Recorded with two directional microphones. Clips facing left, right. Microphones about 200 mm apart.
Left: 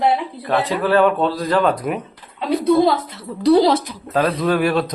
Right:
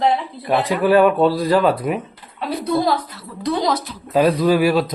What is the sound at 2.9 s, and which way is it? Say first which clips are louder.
Speech: even; 25° left (ahead or behind).